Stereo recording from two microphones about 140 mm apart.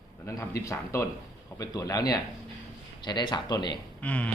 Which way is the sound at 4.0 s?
10° left (ahead or behind).